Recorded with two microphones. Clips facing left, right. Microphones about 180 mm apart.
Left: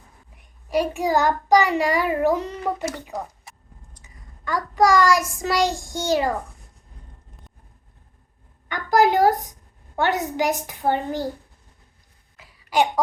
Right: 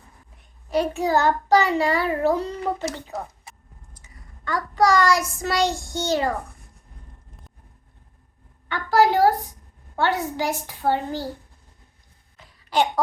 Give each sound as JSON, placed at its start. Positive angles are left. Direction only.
{"t": 0.3, "sound": "a child's voice", "side_deg": 10}
{"t": 5.7, "sound": "a child's voice", "side_deg": 90}
{"t": 8.7, "sound": "a woman's voice", "side_deg": 15}
{"t": 12.4, "sound": "a sound", "side_deg": 10}